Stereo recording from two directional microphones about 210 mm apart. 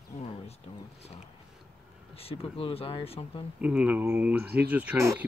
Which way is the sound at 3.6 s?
5° right (ahead or behind).